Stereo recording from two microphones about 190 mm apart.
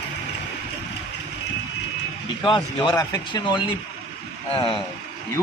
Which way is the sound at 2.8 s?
20° left (ahead or behind).